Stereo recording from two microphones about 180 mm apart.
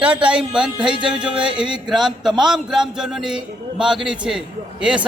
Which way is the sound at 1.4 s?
25° right (ahead or behind).